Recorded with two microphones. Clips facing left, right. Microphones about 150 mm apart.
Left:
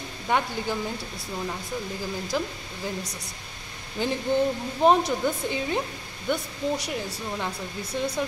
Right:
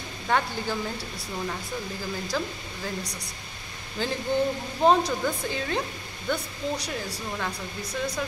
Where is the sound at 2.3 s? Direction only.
15° left (ahead or behind).